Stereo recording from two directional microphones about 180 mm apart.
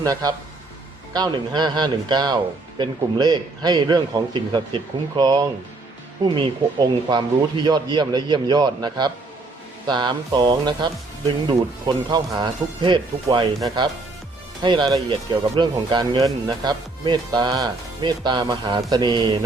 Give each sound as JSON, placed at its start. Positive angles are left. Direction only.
{"t": 0.0, "sound": "speech", "side_deg": -20}